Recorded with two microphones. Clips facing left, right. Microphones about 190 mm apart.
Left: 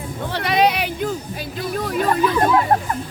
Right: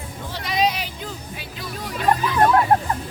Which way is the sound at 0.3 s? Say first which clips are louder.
Left 5 dB; 65° left (ahead or behind).